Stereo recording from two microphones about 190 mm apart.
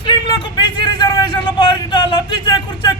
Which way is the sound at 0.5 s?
25° left (ahead or behind).